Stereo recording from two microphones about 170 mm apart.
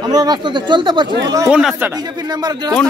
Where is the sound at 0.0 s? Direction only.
25° right (ahead or behind).